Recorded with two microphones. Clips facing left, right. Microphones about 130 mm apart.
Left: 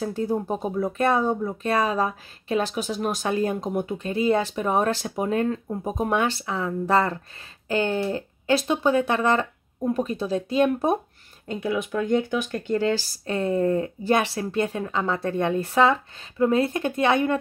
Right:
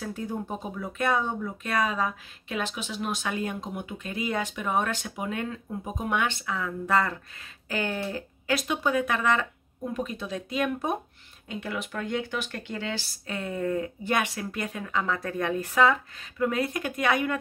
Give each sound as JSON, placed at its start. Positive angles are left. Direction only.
{"t": 0.0, "sound": "speech", "side_deg": 30}
{"t": 11.6, "sound": "speech", "side_deg": 20}
{"t": 12.5, "sound": "speech", "side_deg": 45}